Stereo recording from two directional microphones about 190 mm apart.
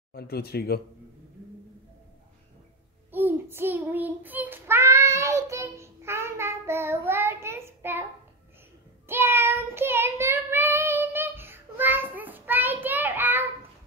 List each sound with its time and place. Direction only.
0.1 s speech: 55° left (ahead or behind)
3.1 s child singing: 10° right (ahead or behind)
9.0 s child singing: 10° right (ahead or behind)